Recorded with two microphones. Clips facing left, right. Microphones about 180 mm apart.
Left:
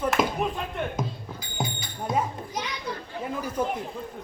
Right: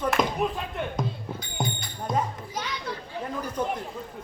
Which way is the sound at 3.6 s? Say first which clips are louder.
Left 1 dB; 5° left (ahead or behind).